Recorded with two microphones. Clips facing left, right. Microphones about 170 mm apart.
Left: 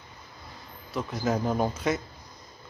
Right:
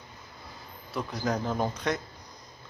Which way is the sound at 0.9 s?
5° left (ahead or behind).